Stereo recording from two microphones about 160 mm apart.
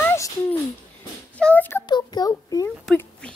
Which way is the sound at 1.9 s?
25° left (ahead or behind).